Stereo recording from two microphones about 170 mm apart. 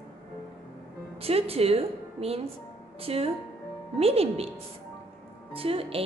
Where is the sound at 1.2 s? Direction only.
35° right (ahead or behind).